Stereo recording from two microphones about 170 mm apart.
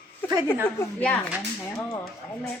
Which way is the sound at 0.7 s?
10° left (ahead or behind).